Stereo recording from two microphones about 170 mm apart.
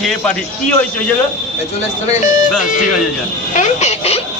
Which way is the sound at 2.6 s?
50° left (ahead or behind).